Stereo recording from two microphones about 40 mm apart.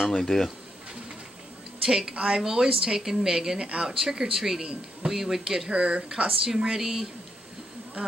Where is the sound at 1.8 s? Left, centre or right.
Centre.